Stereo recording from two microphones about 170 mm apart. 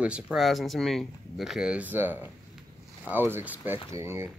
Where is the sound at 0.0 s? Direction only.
5° right (ahead or behind).